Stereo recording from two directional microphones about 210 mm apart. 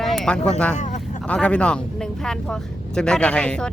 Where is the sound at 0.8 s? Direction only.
35° left (ahead or behind).